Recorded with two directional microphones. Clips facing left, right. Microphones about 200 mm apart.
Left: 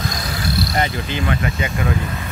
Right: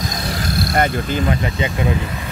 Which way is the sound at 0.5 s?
50° right (ahead or behind).